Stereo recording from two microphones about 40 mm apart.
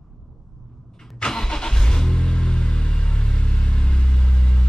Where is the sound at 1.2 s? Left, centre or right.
Centre.